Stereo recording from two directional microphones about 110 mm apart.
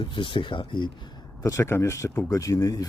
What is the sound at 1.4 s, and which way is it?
Speech, 30° left (ahead or behind).